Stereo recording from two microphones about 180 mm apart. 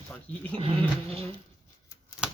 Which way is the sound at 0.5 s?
35° right (ahead or behind).